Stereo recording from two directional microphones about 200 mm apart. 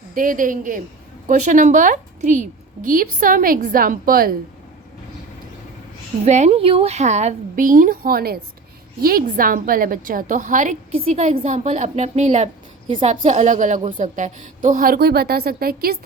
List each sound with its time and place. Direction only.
0.1 s a woman's voice: 40° right (ahead or behind)
6.2 s a woman's voice: 35° right (ahead or behind)